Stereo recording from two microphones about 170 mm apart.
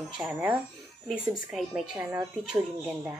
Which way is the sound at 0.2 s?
5° right (ahead or behind).